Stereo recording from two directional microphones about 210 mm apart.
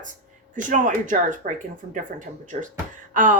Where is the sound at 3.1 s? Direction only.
40° right (ahead or behind).